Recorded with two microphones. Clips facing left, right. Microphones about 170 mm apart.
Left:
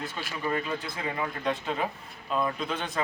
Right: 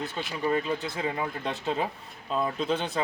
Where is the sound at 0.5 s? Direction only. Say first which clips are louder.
Right 3 dB; 15° right (ahead or behind).